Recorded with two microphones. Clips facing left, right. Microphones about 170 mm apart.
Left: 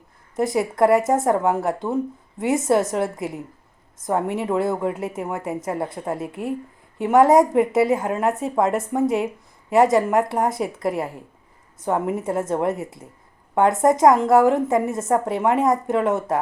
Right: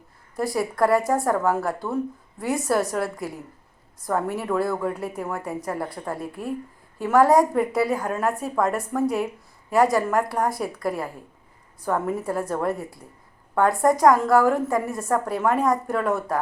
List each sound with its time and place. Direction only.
0.3 s a woman's voice: 20° left (ahead or behind)